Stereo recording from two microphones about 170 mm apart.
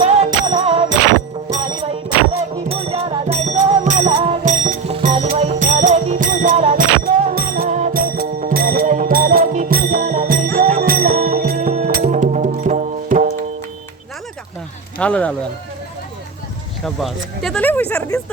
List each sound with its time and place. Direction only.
0.0 s music: 40° right (ahead or behind)
2.3 s music: 35° right (ahead or behind)
14.9 s speech: 10° left (ahead or behind)
16.8 s speech: centre (ahead or behind)